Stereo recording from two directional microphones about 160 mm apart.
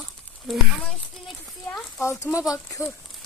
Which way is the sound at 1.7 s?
20° left (ahead or behind).